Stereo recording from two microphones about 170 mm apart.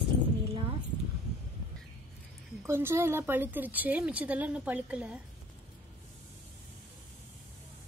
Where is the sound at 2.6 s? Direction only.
15° right (ahead or behind).